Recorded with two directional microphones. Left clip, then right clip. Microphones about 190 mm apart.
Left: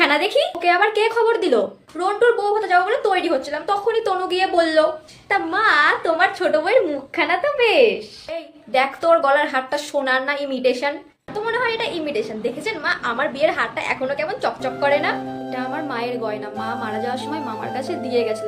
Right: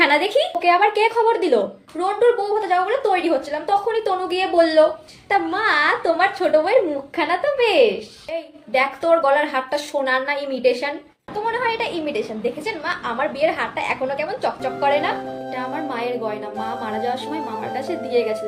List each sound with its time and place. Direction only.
0.0 s a woman's voice: 20° left (ahead or behind)